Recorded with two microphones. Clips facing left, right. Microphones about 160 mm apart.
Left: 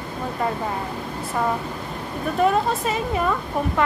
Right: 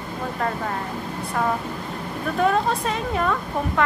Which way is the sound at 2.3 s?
5° left (ahead or behind).